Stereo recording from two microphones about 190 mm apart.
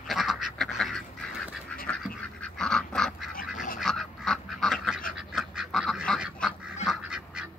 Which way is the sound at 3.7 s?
Centre (ahead or behind).